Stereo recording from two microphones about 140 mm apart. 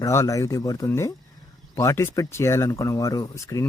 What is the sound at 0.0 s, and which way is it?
Speech, 20° left (ahead or behind).